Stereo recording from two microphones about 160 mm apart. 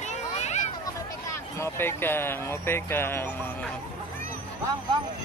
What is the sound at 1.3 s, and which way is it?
Speech, 15° left (ahead or behind).